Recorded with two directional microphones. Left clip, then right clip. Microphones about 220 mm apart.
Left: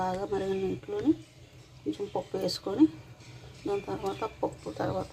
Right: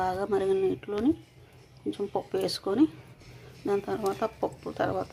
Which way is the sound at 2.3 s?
10° right (ahead or behind).